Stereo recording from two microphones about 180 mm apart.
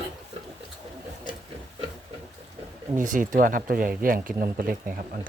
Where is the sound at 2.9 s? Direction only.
45° right (ahead or behind).